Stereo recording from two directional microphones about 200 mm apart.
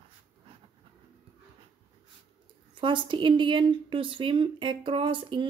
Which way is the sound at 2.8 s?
25° right (ahead or behind).